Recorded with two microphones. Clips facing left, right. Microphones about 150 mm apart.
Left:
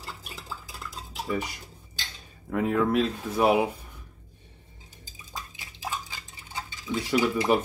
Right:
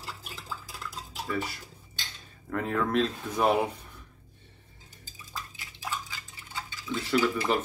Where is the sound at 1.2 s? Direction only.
15° left (ahead or behind).